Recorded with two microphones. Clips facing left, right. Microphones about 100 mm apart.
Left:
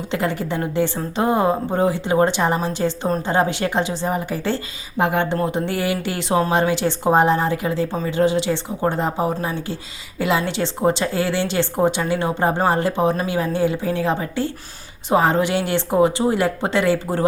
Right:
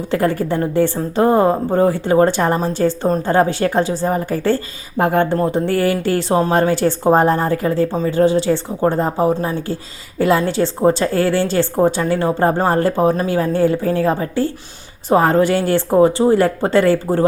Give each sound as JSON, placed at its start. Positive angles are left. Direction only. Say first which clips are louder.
{"t": 0.1, "sound": "speech", "louder": "right 6 dB", "side_deg": -45}